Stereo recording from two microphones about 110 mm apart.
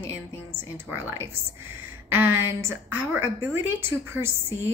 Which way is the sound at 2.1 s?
20° right (ahead or behind).